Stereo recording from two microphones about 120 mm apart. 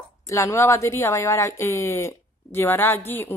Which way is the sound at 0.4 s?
25° left (ahead or behind).